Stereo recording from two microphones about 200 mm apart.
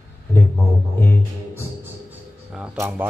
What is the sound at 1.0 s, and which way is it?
Music, 10° left (ahead or behind).